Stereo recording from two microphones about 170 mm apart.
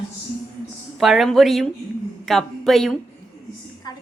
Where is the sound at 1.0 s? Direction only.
Centre (ahead or behind).